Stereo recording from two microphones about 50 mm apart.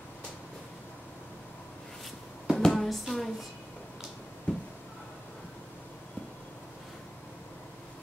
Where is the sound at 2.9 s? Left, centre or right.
Centre.